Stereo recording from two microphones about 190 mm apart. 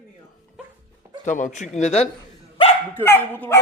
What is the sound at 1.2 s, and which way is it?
Speech, 40° left (ahead or behind).